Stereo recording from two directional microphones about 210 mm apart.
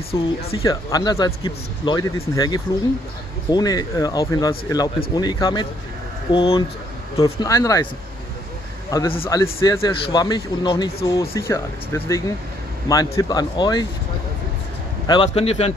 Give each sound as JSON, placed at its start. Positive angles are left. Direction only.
{"t": 0.1, "sound": "speech", "side_deg": 25}
{"t": 7.4, "sound": "speech", "side_deg": 15}
{"t": 9.1, "sound": "speech", "side_deg": 25}
{"t": 9.4, "sound": "speech", "side_deg": 15}
{"t": 15.0, "sound": "speech", "side_deg": 25}